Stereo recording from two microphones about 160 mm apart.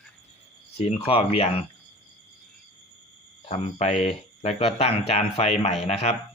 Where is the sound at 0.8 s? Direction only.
35° left (ahead or behind).